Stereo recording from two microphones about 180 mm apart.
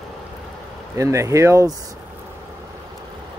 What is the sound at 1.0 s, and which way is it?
Speech, 15° right (ahead or behind).